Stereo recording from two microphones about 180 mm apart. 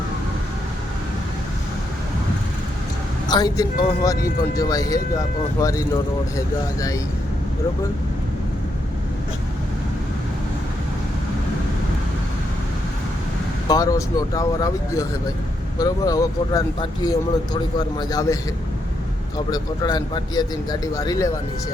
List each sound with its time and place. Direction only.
3.2 s speech: 20° left (ahead or behind)
13.7 s speech: 20° left (ahead or behind)
19.5 s speech: 20° left (ahead or behind)